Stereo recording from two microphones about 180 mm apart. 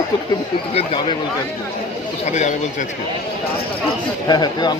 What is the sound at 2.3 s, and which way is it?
Speech, 40° left (ahead or behind).